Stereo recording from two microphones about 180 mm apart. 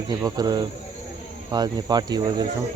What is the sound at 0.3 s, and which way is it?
Speech, 20° right (ahead or behind).